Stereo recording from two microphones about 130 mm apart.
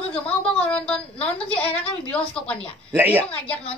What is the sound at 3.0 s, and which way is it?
Speech, 15° right (ahead or behind).